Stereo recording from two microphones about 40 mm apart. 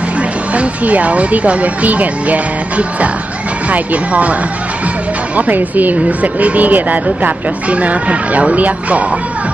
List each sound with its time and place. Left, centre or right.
0.6 s speech: right
3.7 s speech: right